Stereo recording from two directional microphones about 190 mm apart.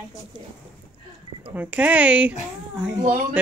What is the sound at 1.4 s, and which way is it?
Speech, 10° right (ahead or behind).